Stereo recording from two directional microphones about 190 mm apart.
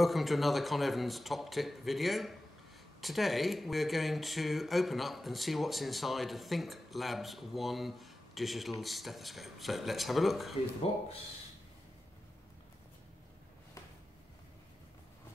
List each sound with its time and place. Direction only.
0.0 s speech: centre (ahead or behind)